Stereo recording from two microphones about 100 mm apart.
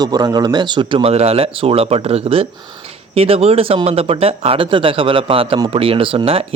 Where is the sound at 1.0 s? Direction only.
90° right.